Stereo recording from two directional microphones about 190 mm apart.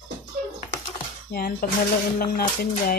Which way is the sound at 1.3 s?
50° left (ahead or behind).